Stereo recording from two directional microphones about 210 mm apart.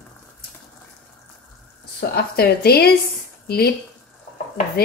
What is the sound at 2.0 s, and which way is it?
Speech, 45° left (ahead or behind).